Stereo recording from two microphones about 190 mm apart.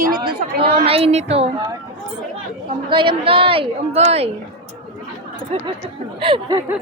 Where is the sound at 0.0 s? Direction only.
50° right (ahead or behind).